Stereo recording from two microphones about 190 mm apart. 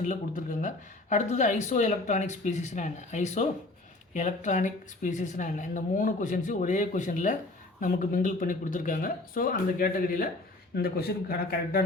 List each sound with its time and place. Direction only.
0.0 s speech: 40° left (ahead or behind)